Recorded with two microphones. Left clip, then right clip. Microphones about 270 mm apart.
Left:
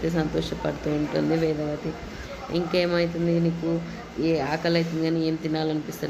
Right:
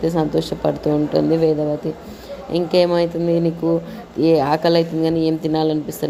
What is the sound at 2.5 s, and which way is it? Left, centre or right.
Speech, right.